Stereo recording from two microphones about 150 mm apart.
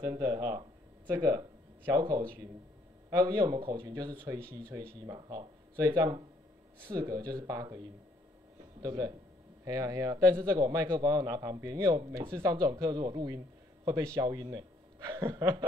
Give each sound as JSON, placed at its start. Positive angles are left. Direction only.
{"t": 0.0, "sound": "a man's voice", "side_deg": -25}
{"t": 3.5, "sound": "a man's voice", "side_deg": -35}
{"t": 8.8, "sound": "a man's voice", "side_deg": -25}